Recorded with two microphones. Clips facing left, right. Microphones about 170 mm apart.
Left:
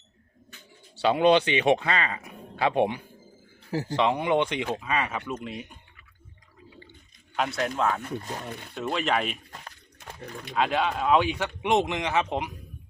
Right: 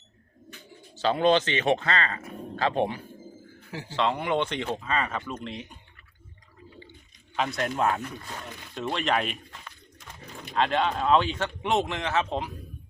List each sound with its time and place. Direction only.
1.0 s speech: 15° left (ahead or behind)
7.3 s speech: 5° left (ahead or behind)
8.0 s speech: 35° left (ahead or behind)
8.7 s speech: 5° left (ahead or behind)
10.5 s speech: 5° left (ahead or behind)